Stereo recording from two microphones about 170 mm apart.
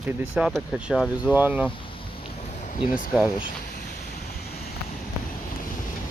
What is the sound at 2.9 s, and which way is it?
Speech, 55° left (ahead or behind).